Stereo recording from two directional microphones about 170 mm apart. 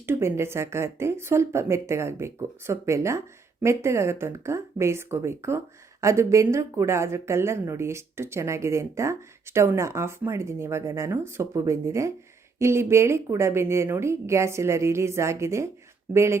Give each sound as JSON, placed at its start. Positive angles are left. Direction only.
{"t": 0.0, "sound": "speech", "side_deg": -15}